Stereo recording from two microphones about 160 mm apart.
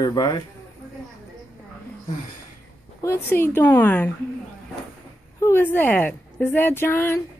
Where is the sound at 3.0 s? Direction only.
15° left (ahead or behind).